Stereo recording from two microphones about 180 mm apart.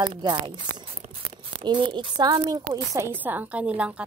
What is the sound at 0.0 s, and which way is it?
A woman's voice, 25° right (ahead or behind).